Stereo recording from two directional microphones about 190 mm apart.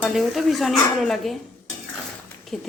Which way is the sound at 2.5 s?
5° left (ahead or behind).